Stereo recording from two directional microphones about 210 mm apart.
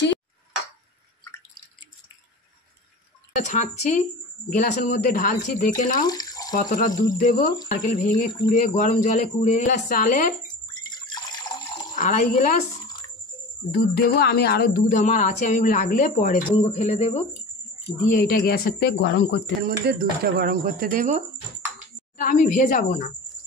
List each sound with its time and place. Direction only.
3.4 s speech: 35° left (ahead or behind)
6.0 s water tap: 20° left (ahead or behind)
6.5 s speech: 40° left (ahead or behind)
10.9 s water: 20° left (ahead or behind)
11.9 s speech: 35° left (ahead or behind)
13.7 s speech: 45° left (ahead or behind)
18.1 s speech: 45° left (ahead or behind)
19.9 s speech: 45° right (ahead or behind)
22.1 s speech: 40° left (ahead or behind)